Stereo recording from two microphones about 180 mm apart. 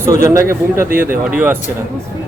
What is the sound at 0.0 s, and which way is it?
Speech, 15° right (ahead or behind).